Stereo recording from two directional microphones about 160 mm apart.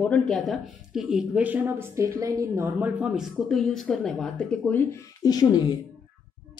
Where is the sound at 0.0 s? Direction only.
5° left (ahead or behind).